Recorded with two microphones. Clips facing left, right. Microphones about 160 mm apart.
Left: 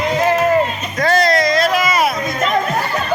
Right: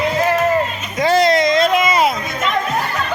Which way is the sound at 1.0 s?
20° right (ahead or behind).